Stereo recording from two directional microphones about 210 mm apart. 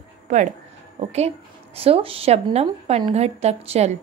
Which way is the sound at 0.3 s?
35° right (ahead or behind).